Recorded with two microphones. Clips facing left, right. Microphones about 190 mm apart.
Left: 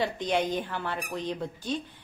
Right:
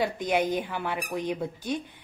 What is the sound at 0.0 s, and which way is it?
A woman's voice, 10° right (ahead or behind).